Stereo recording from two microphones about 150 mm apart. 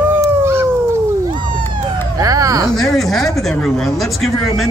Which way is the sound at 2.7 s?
Centre (ahead or behind).